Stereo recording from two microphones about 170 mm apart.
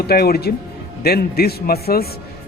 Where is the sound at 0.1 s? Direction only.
65° left (ahead or behind).